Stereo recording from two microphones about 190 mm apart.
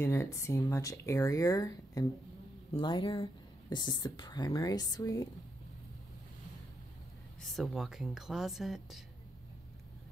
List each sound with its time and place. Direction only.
0.0 s speech: 15° left (ahead or behind)
7.4 s speech: centre (ahead or behind)